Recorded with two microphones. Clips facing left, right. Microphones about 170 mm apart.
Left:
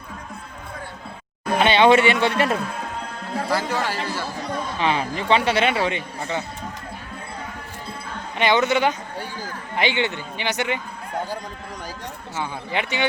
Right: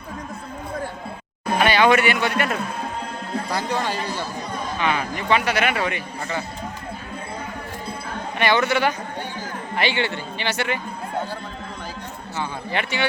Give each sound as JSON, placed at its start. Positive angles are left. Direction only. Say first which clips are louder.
{"t": 1.5, "sound": "a man's voice", "louder": "left 2 dB", "side_deg": 25}
{"t": 3.5, "sound": "speech", "louder": "left 1 dB", "side_deg": -15}
{"t": 4.8, "sound": "a man's voice", "louder": "left 1 dB", "side_deg": 30}
{"t": 8.4, "sound": "a man's voice", "louder": "left 1 dB", "side_deg": 20}
{"t": 12.4, "sound": "speech", "louder": "even", "side_deg": 15}